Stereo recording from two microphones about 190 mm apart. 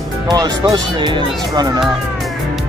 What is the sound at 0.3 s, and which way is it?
Speech, 20° right (ahead or behind).